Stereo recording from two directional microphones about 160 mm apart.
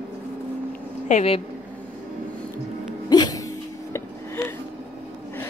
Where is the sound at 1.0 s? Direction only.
45° left (ahead or behind).